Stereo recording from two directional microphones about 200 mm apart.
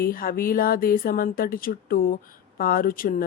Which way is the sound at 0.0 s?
45° left (ahead or behind).